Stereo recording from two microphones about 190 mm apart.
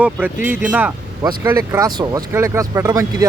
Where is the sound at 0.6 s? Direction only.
10° right (ahead or behind).